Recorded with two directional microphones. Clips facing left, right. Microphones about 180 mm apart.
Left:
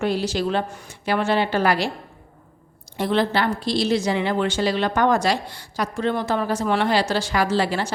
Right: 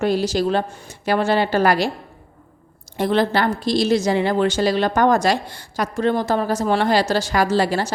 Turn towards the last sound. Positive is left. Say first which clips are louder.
# right 3 dB
turn(degrees=-40)  # may be behind; listen again after turning